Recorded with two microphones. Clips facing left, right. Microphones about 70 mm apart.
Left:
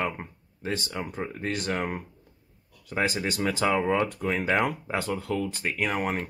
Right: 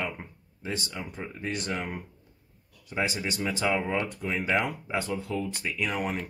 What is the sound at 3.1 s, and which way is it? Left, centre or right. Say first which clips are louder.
Speech: left 3 dB; left.